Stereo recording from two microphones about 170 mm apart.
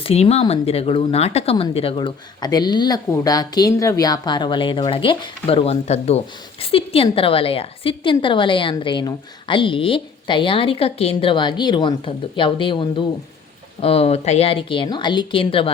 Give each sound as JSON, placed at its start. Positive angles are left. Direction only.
{"t": 0.0, "sound": "a woman's voice", "side_deg": 35}